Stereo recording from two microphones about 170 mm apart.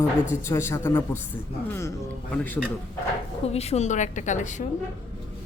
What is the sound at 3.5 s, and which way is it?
A woman's voice, 40° left (ahead or behind).